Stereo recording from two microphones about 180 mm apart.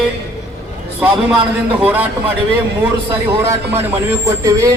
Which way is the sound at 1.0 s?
5° right (ahead or behind).